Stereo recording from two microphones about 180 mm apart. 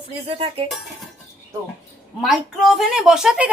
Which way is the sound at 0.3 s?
30° right (ahead or behind).